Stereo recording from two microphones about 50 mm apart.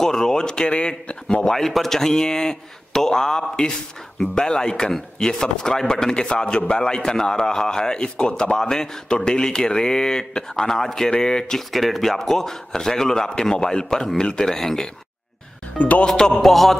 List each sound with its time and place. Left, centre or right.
0.0 s a man's voice: centre
1.5 s a man's voice: centre
11.7 s a man's voice: centre
15.8 s a man's voice: left
16.1 s a man's voice: centre